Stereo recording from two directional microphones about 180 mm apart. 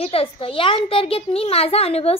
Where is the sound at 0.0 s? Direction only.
30° left (ahead or behind).